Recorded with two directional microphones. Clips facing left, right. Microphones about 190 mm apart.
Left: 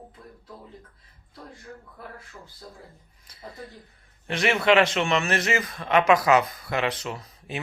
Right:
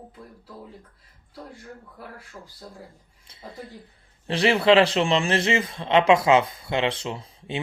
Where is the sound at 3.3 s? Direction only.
25° right (ahead or behind).